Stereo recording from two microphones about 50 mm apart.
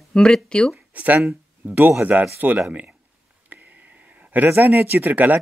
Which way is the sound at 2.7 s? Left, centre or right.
Right.